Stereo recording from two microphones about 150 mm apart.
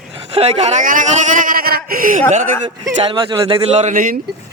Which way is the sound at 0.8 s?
60° right (ahead or behind).